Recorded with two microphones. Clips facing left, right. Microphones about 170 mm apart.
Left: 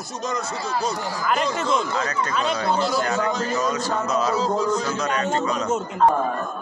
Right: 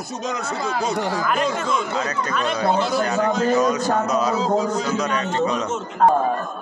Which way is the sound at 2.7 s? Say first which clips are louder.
Right 2 dB; 55° right (ahead or behind).